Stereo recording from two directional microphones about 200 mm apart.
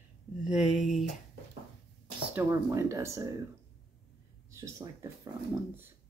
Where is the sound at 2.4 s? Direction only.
15° right (ahead or behind).